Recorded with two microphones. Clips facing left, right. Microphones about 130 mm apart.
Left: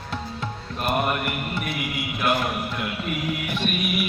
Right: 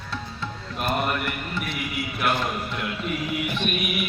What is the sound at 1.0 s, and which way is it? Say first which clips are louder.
Music: left 1 dB; 15° left (ahead or behind).